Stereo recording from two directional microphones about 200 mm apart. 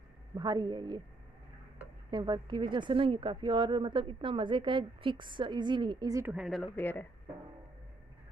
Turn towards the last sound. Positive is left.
turn(degrees=10)  # may be behind; listen again after turning